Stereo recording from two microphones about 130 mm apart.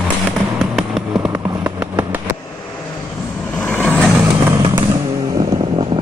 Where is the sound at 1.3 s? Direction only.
25° right (ahead or behind).